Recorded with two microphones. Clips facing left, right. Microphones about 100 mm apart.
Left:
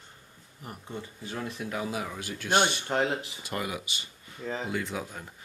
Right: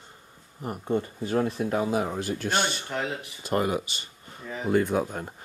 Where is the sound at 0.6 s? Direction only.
45° right (ahead or behind).